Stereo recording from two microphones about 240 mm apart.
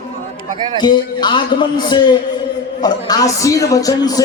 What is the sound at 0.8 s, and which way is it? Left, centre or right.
A man's voice, centre.